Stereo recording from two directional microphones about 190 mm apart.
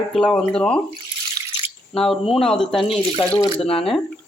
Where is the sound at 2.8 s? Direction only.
30° left (ahead or behind).